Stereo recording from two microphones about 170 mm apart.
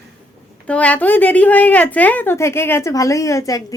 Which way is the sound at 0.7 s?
10° left (ahead or behind).